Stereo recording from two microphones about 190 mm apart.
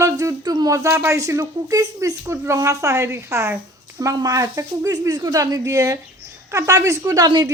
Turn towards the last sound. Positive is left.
turn(degrees=-20)  # may be behind; listen again after turning